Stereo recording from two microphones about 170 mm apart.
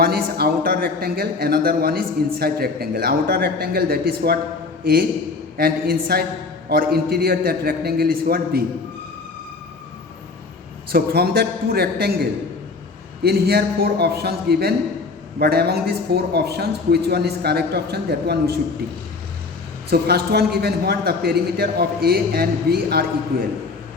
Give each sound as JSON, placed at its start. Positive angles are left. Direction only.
{"t": 0.0, "sound": "a man's voice", "side_deg": -65}
{"t": 10.9, "sound": "speech", "side_deg": -65}
{"t": 13.2, "sound": "a man's voice", "side_deg": -65}
{"t": 19.9, "sound": "a man's voice", "side_deg": -70}